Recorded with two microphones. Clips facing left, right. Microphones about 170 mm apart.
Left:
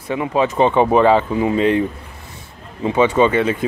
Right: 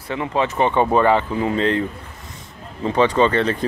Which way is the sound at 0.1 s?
15° left (ahead or behind).